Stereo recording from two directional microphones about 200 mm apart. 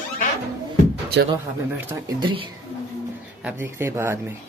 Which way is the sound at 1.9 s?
20° right (ahead or behind).